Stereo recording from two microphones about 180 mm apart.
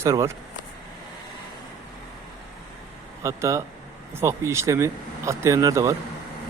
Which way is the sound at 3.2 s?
15° right (ahead or behind).